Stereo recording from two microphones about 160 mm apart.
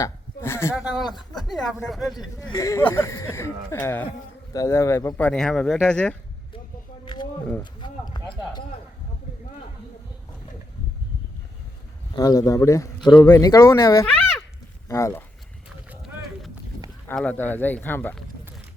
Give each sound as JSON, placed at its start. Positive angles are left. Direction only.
{"t": 0.0, "sound": "a sound", "side_deg": 15}
{"t": 0.8, "sound": "speech", "side_deg": -5}
{"t": 2.4, "sound": "speech", "side_deg": 20}
{"t": 7.0, "sound": "a sound", "side_deg": 30}
{"t": 7.6, "sound": "speech", "side_deg": 25}
{"t": 12.1, "sound": "speech", "side_deg": 25}
{"t": 14.1, "sound": "a sound", "side_deg": 10}
{"t": 14.8, "sound": "speech", "side_deg": 20}
{"t": 15.9, "sound": "run", "side_deg": -5}
{"t": 17.1, "sound": "speech", "side_deg": 10}